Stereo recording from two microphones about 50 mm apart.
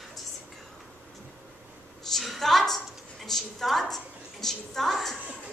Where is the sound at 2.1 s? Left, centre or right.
Centre.